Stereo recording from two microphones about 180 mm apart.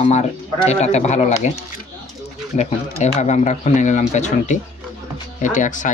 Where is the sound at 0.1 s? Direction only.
40° left (ahead or behind).